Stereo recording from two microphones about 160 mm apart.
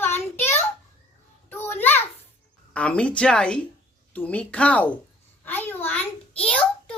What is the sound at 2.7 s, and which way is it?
A woman's voice, 5° left (ahead or behind).